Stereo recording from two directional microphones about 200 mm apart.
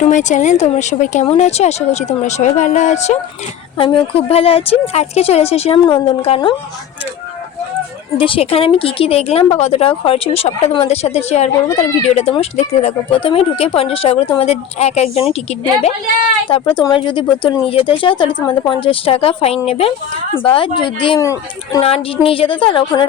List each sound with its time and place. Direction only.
0.1 s speech: 40° left (ahead or behind)
8.2 s speech: 25° left (ahead or behind)
16.5 s speech: 25° left (ahead or behind)
21.8 s speech: 30° left (ahead or behind)